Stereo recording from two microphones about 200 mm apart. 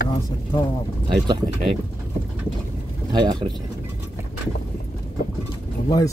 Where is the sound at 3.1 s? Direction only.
20° right (ahead or behind).